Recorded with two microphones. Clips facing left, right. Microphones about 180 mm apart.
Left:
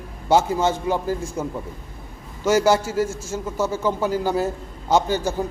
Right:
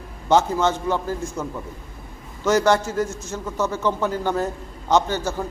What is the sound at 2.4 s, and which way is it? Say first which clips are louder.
A man's voice: left 1 dB; 10° left (ahead or behind).